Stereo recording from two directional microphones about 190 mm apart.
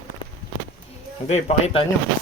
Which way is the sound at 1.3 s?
35° left (ahead or behind).